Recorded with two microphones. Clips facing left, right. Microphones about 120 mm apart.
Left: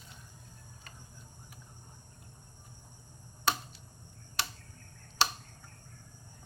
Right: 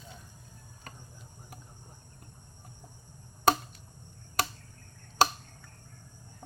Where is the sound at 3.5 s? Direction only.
45° right (ahead or behind).